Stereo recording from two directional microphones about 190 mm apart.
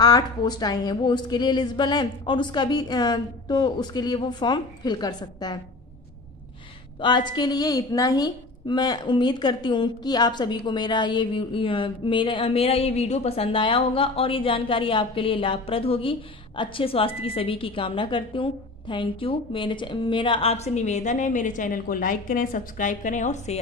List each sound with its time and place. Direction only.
0.0 s a woman's voice: 20° left (ahead or behind)
7.0 s a woman's voice: 25° left (ahead or behind)